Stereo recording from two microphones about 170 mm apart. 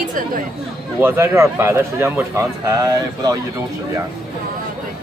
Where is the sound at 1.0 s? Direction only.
15° right (ahead or behind).